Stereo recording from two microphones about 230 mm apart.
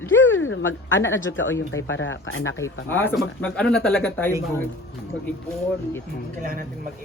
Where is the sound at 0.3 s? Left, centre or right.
Left.